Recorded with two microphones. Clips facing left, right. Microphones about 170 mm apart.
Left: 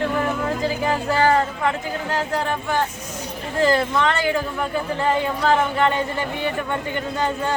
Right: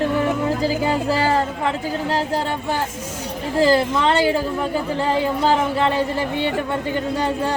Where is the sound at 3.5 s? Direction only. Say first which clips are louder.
Right 2 dB; 35° right (ahead or behind).